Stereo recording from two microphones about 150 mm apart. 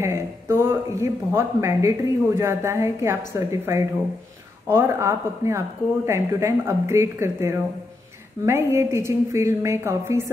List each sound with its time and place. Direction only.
0.0 s a woman's voice: 15° right (ahead or behind)